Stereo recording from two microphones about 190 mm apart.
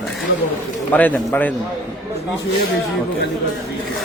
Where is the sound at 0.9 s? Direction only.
10° left (ahead or behind).